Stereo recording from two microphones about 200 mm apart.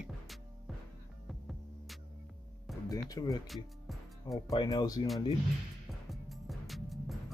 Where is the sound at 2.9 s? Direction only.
15° left (ahead or behind).